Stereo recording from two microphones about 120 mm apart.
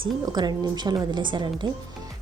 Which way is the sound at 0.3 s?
35° right (ahead or behind).